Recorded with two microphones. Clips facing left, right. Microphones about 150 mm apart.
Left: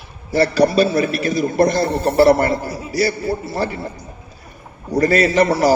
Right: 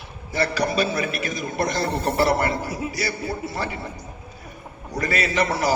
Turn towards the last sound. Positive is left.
turn(degrees=35)  # may be behind; listen again after turning